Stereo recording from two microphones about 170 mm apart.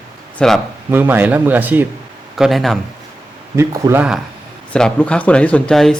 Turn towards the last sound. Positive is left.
turn(degrees=5)  # may be behind; listen again after turning